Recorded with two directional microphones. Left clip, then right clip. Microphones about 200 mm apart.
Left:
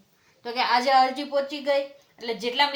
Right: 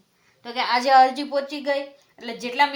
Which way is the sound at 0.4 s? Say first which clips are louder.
Right 1 dB; 30° right (ahead or behind).